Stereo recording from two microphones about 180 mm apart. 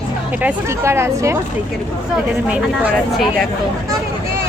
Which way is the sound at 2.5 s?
5° right (ahead or behind).